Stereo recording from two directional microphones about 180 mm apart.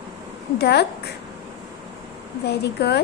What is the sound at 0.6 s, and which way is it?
Speech, 65° left (ahead or behind).